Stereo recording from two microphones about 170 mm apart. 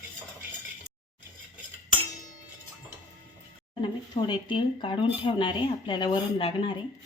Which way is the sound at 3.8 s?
25° left (ahead or behind).